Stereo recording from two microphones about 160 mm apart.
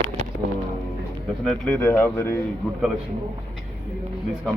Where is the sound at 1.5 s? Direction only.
10° left (ahead or behind).